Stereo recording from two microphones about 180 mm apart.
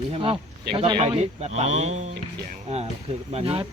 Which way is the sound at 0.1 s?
30° right (ahead or behind).